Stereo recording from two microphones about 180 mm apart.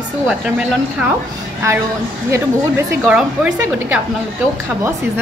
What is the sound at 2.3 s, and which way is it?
Speech, 15° right (ahead or behind).